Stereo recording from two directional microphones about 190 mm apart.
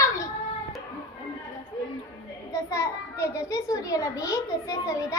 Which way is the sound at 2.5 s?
15° left (ahead or behind).